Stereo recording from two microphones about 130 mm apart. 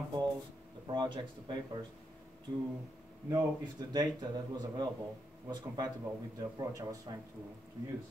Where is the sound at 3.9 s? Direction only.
30° right (ahead or behind).